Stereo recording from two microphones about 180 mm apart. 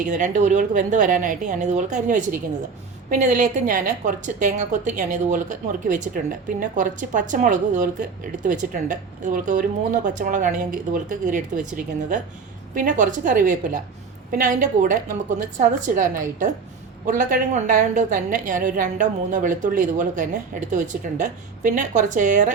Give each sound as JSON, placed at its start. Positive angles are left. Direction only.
{"t": 0.0, "sound": "a woman's voice", "side_deg": -45}